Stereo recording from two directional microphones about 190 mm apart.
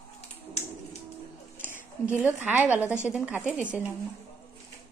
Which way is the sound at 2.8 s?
10° left (ahead or behind).